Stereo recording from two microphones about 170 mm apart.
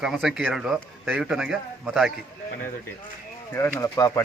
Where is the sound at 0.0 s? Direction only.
Centre (ahead or behind).